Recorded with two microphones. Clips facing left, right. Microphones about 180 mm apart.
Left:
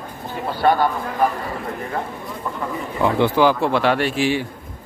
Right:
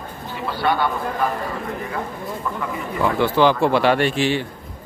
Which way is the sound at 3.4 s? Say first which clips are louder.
Right 1 dB; centre (ahead or behind).